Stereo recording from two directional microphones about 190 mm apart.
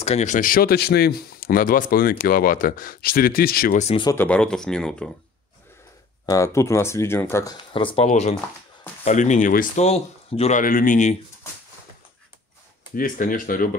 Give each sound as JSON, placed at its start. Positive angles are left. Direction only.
{"t": 0.0, "sound": "speech", "side_deg": 35}
{"t": 3.8, "sound": "speech", "side_deg": 25}
{"t": 4.1, "sound": "speech", "side_deg": 10}
{"t": 6.2, "sound": "speech", "side_deg": 15}
{"t": 7.7, "sound": "speech", "side_deg": 30}
{"t": 12.9, "sound": "speech", "side_deg": 45}